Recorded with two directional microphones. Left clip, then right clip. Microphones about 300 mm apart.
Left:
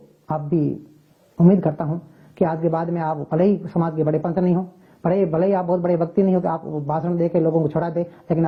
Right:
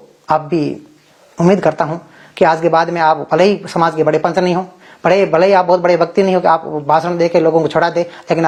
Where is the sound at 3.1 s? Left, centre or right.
Centre.